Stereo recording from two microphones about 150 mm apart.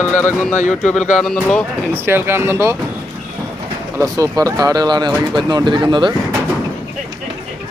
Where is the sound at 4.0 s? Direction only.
20° right (ahead or behind).